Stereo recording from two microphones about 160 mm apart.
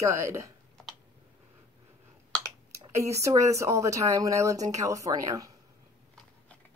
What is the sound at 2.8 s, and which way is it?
Speech, 20° right (ahead or behind).